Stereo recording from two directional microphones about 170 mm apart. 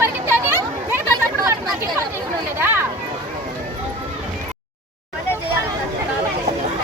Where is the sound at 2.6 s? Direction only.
15° right (ahead or behind).